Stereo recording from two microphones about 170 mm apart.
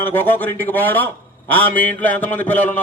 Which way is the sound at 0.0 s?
10° left (ahead or behind).